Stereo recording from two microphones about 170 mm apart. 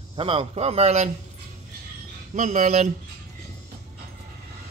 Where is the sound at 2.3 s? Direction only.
45° right (ahead or behind).